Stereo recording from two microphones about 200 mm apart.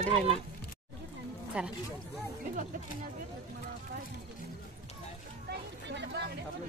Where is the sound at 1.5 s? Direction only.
5° right (ahead or behind).